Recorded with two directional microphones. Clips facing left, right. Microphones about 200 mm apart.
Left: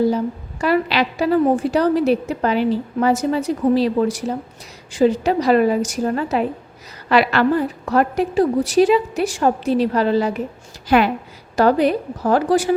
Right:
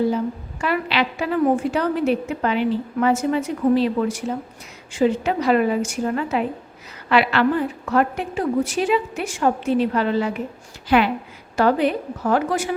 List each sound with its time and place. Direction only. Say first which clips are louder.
0.6 s a woman's voice: left 4 dB; 40° left (ahead or behind)